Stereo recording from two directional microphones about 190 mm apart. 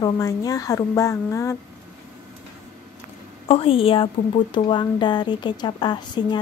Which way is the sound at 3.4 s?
30° left (ahead or behind).